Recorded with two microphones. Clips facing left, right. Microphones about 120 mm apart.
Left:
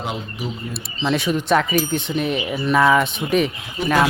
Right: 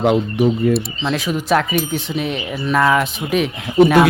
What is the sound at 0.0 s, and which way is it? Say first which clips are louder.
Speech: right 13 dB; 60° right (ahead or behind).